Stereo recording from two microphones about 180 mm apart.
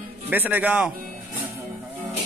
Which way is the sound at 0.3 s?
10° right (ahead or behind).